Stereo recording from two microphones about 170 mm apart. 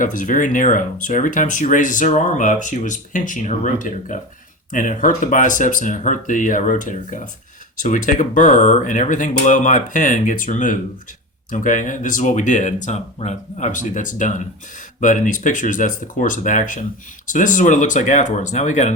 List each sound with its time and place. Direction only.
0.0 s speech: 50° left (ahead or behind)